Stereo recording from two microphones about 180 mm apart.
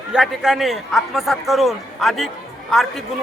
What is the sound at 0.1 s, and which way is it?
A man's voice, 5° right (ahead or behind).